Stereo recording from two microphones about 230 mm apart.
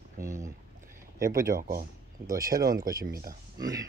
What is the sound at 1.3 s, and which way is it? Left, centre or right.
Speech, right.